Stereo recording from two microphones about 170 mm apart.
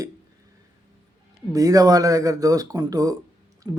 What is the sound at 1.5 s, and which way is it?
A man's voice, 20° right (ahead or behind).